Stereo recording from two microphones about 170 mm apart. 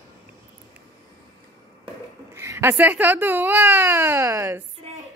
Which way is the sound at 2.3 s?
15° right (ahead or behind).